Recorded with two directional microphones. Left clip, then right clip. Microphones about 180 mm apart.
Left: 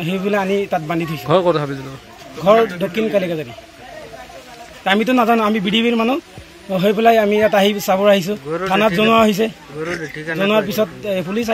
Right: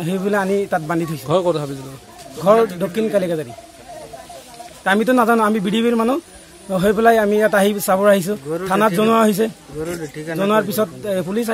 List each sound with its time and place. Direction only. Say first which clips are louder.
0.0 s a man's voice: left 1 dB; 10° right (ahead or behind)
3.1 s speech: right 1 dB; 15° right (ahead or behind)
4.8 s speech: even; 15° right (ahead or behind)
9.8 s speech: left 2 dB; 60° right (ahead or behind)
10.4 s speech: left 1 dB; 15° right (ahead or behind)